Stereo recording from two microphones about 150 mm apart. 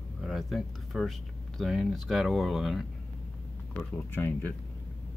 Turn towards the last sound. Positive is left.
turn(degrees=10)  # may be behind; listen again after turning